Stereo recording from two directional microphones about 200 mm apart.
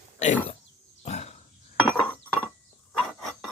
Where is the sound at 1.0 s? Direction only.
35° left (ahead or behind).